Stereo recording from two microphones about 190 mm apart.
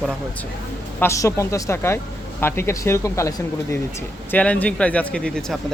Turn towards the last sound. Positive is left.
turn(degrees=5)  # may be behind; listen again after turning